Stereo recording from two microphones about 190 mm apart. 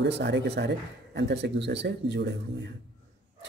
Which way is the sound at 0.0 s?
65° right (ahead or behind).